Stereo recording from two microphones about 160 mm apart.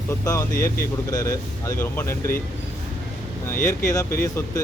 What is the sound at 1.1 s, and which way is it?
Speech, 20° left (ahead or behind).